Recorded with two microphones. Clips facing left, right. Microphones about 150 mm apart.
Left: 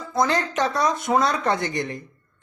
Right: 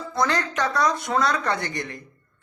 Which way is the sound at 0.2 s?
20° left (ahead or behind).